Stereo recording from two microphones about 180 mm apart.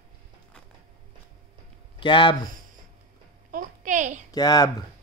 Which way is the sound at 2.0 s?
30° left (ahead or behind).